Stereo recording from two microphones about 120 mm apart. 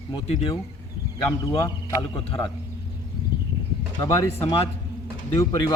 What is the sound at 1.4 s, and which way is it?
Speech, 25° left (ahead or behind).